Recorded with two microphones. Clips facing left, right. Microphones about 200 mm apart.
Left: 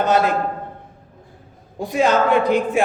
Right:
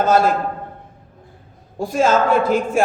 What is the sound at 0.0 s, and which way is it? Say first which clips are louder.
Speech: right 2 dB; 40° right (ahead or behind).